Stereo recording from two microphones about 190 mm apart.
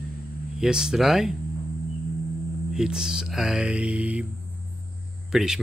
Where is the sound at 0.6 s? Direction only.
5° right (ahead or behind).